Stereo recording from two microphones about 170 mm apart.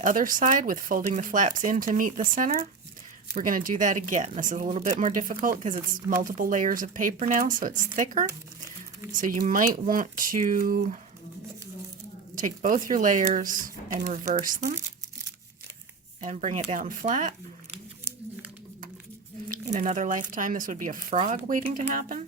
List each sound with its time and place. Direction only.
0.0 s speech: 50° right (ahead or behind)
3.3 s speech: 50° right (ahead or behind)
12.4 s speech: 50° right (ahead or behind)
16.2 s speech: 45° right (ahead or behind)
19.5 s speech: 50° right (ahead or behind)